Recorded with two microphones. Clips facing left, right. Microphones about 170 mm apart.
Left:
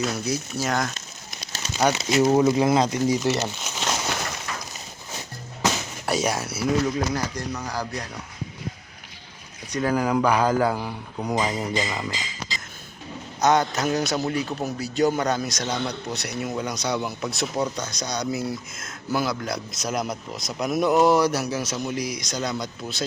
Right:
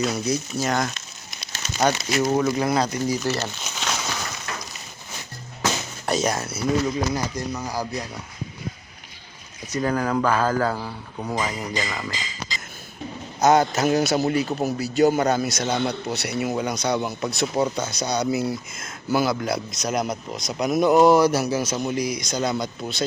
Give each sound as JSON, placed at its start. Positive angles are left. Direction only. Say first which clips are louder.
{"t": 0.0, "sound": "speech", "louder": "right 2 dB", "side_deg": 5}
{"t": 2.0, "sound": "speech", "louder": "left 3 dB", "side_deg": 25}
{"t": 3.8, "sound": "a sound", "louder": "left 1 dB", "side_deg": 10}
{"t": 6.1, "sound": "speech", "louder": "right 1 dB", "side_deg": 10}
{"t": 7.1, "sound": "speech", "louder": "right 1 dB", "side_deg": -10}
{"t": 9.9, "sound": "speech", "louder": "left 2 dB", "side_deg": 10}
{"t": 11.9, "sound": "speech", "louder": "left 1 dB", "side_deg": 15}
{"t": 13.4, "sound": "speech", "louder": "right 3 dB", "side_deg": -5}